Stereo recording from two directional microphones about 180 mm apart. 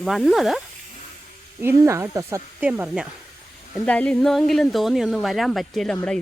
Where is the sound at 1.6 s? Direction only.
15° right (ahead or behind).